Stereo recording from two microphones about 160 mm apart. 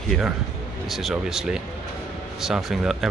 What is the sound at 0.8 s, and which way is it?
Speech, centre (ahead or behind).